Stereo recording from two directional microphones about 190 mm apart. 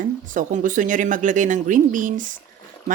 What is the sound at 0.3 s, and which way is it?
Speech, 45° right (ahead or behind).